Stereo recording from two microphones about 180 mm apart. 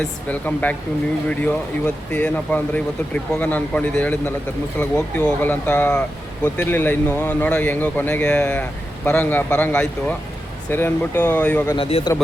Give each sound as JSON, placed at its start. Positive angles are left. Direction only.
{"t": 0.0, "sound": "speech", "side_deg": 10}
{"t": 11.8, "sound": "a man's voice", "side_deg": 30}